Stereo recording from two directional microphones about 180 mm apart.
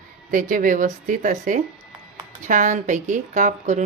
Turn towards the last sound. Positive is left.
turn(degrees=-45)  # may be behind; listen again after turning